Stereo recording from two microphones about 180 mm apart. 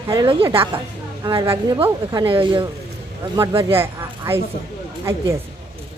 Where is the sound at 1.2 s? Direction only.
15° right (ahead or behind).